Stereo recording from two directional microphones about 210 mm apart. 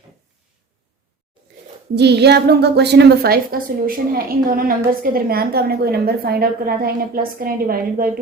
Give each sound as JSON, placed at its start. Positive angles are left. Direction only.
{"t": 2.0, "sound": "a woman's voice", "side_deg": -55}